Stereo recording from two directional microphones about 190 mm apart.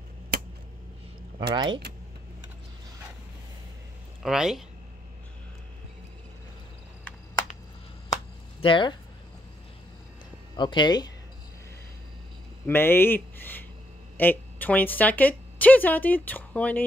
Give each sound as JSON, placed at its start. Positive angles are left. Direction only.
{"t": 1.5, "sound": "speech", "side_deg": -25}
{"t": 4.2, "sound": "speech", "side_deg": 0}
{"t": 8.5, "sound": "speech", "side_deg": 25}
{"t": 10.5, "sound": "speech", "side_deg": 25}
{"t": 12.6, "sound": "speech", "side_deg": 10}